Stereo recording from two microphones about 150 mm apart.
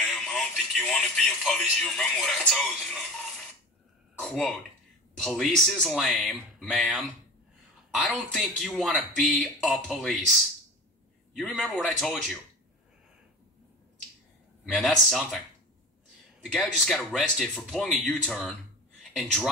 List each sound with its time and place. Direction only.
0.0 s speech: centre (ahead or behind)
14.7 s speech: centre (ahead or behind)
16.5 s speech: centre (ahead or behind)